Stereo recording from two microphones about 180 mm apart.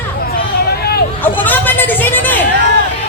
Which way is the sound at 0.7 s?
60° left (ahead or behind).